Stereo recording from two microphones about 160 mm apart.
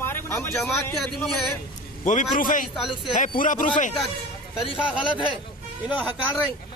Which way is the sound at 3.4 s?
55° left (ahead or behind).